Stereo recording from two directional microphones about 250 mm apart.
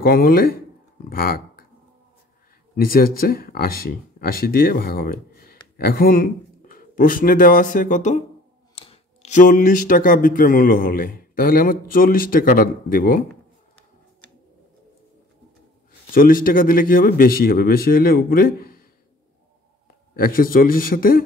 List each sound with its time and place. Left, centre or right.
0.0 s speech: left
1.1 s a sound: left
2.7 s speech: left
16.1 s speech: left
20.2 s speech: left